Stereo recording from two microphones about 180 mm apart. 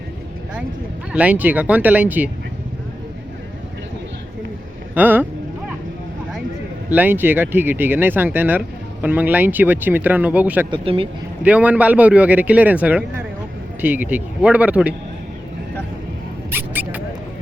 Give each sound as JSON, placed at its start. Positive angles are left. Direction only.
{"t": 1.1, "sound": "speech", "side_deg": -10}
{"t": 4.9, "sound": "speech", "side_deg": -10}
{"t": 6.9, "sound": "speech", "side_deg": -10}
{"t": 10.7, "sound": "speech", "side_deg": -30}
{"t": 11.4, "sound": "speech", "side_deg": -10}
{"t": 16.5, "sound": "mouse", "side_deg": -10}